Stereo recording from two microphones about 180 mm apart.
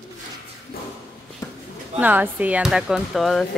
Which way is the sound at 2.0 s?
10° right (ahead or behind).